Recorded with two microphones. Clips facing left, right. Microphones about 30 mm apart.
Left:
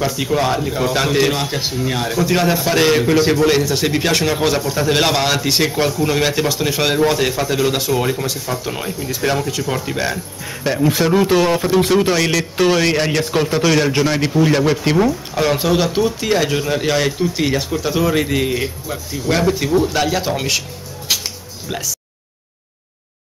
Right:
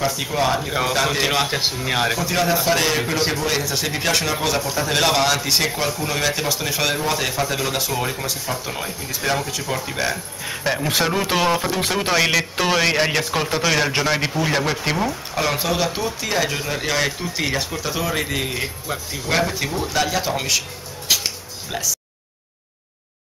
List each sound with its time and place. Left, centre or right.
0.0 s speech: centre
0.7 s speech: centre
1.0 s speech: centre
1.3 s speech: centre
2.1 s a man's voice: centre
12.0 s speech: centre
18.9 s a man's voice: centre
21.1 s music: centre
21.6 s a man's voice: centre